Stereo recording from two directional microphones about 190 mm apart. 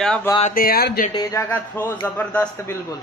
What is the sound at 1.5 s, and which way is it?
A man's voice, 10° left (ahead or behind).